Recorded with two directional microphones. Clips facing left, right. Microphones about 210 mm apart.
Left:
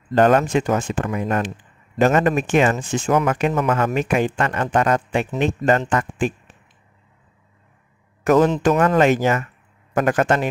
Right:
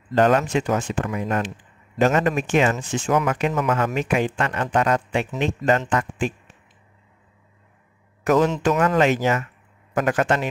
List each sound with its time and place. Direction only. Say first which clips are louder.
0.1 s speech: left 3 dB; 50° left (ahead or behind)
8.5 s speech: left 3 dB; 45° left (ahead or behind)